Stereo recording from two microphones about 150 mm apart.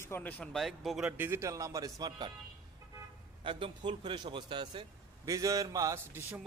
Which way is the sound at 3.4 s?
35° right (ahead or behind).